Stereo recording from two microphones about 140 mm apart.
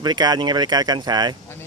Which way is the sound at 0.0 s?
30° right (ahead or behind).